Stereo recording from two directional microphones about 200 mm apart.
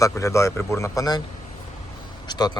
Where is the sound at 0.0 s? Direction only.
15° left (ahead or behind).